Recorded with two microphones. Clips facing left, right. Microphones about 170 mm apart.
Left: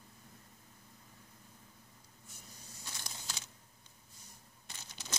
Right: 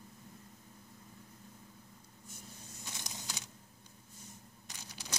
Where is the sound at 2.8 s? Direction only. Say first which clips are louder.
Right 2 dB; 20° right (ahead or behind).